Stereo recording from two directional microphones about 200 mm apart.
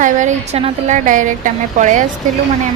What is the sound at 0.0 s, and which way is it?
A woman's voice, 35° right (ahead or behind).